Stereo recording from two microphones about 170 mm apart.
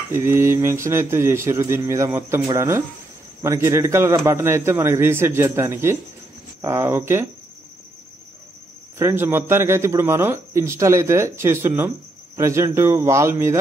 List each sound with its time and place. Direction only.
0.1 s speech: 15° right (ahead or behind)
8.9 s speech: 15° right (ahead or behind)